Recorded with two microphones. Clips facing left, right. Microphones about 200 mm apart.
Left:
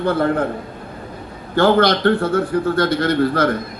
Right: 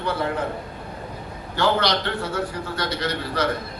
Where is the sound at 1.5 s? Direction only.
55° left (ahead or behind).